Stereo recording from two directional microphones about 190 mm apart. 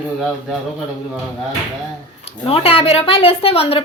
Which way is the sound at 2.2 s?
30° left (ahead or behind).